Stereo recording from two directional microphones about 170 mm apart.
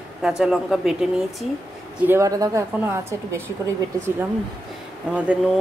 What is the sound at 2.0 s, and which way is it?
A woman's voice, 15° right (ahead or behind).